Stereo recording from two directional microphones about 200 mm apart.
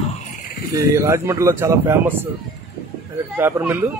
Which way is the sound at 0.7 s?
15° right (ahead or behind).